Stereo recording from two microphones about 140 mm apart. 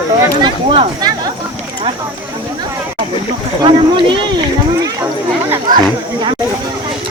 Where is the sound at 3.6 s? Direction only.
35° right (ahead or behind).